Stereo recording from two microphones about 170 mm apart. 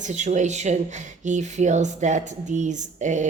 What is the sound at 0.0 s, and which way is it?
Speech, 45° right (ahead or behind).